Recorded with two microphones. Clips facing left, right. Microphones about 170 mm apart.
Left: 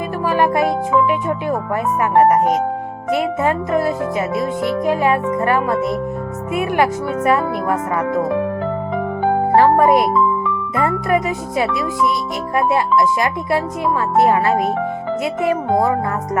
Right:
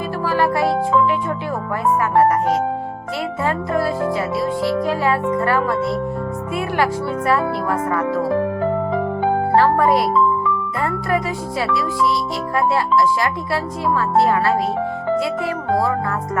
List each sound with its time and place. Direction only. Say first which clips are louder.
0.3 s music: left 2 dB; 20° left (ahead or behind)
1.5 s speech: right 1 dB; 20° left (ahead or behind)
9.6 s speech: left 4 dB; 20° left (ahead or behind)